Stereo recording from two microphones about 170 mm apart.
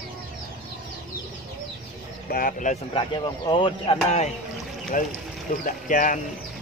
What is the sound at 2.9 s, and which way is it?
A man's voice, 30° left (ahead or behind).